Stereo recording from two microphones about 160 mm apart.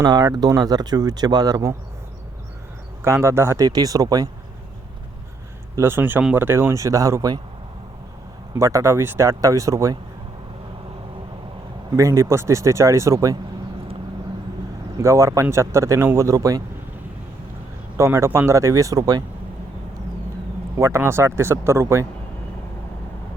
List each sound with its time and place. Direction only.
0.0 s speech: 25° right (ahead or behind)
3.0 s speech: 15° right (ahead or behind)
5.7 s speech: 15° right (ahead or behind)
8.5 s speech: 20° right (ahead or behind)
11.9 s speech: 20° right (ahead or behind)
14.9 s speech: 20° right (ahead or behind)
17.9 s speech: 20° right (ahead or behind)
20.7 s speech: 15° right (ahead or behind)